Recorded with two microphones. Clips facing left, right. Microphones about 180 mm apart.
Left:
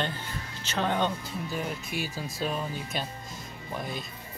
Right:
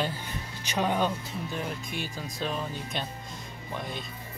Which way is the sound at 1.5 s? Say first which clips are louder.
Left 2 dB; 5° left (ahead or behind).